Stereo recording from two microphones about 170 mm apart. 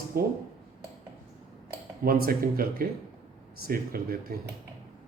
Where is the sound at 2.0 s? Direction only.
60° right (ahead or behind).